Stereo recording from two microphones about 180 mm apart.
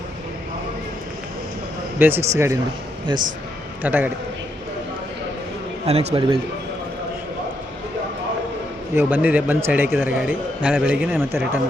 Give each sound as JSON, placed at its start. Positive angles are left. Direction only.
{"t": 2.0, "sound": "a man's voice", "side_deg": -10}
{"t": 3.8, "sound": "a man's voice", "side_deg": -10}
{"t": 5.8, "sound": "a man's voice", "side_deg": -35}
{"t": 9.0, "sound": "a man's voice", "side_deg": -10}